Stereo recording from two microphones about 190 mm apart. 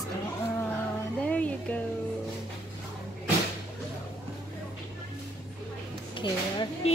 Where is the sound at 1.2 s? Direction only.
10° left (ahead or behind).